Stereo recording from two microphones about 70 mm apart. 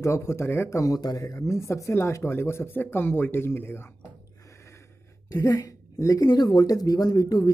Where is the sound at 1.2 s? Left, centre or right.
Left.